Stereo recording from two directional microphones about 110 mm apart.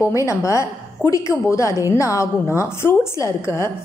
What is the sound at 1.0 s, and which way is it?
Speech, 15° left (ahead or behind).